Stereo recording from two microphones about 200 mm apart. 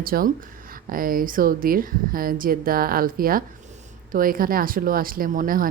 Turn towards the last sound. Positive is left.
turn(degrees=-45)  # may be behind; listen again after turning